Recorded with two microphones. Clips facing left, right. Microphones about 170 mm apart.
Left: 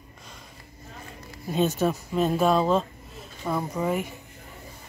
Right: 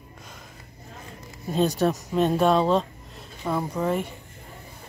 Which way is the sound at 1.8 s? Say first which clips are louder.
Right 2 dB; 5° left (ahead or behind).